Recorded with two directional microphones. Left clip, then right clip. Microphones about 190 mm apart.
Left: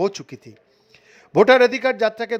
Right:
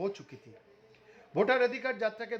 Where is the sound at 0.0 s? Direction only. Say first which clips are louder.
Left 13 dB; 50° left (ahead or behind).